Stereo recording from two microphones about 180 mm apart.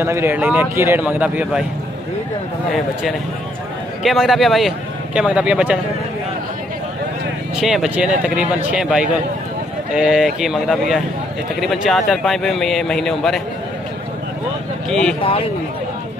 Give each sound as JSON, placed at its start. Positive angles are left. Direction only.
{"t": 0.0, "sound": "a man's voice", "side_deg": -15}
{"t": 2.7, "sound": "a man's voice", "side_deg": 0}
{"t": 7.5, "sound": "a man's voice", "side_deg": 0}
{"t": 14.9, "sound": "a man's voice", "side_deg": 5}
{"t": 15.2, "sound": "speech", "side_deg": 30}